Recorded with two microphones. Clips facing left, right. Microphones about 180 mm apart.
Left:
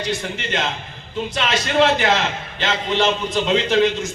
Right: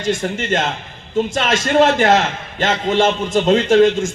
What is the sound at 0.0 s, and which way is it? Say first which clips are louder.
A man's voice: right 5 dB; 45° right (ahead or behind).